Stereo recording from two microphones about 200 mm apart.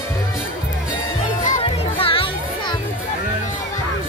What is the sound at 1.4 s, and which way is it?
Music, 35° left (ahead or behind).